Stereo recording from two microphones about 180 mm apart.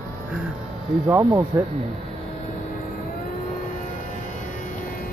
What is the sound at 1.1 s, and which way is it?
Speech, 15° right (ahead or behind).